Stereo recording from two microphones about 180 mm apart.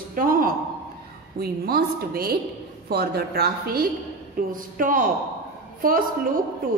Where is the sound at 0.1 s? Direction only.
50° right (ahead or behind).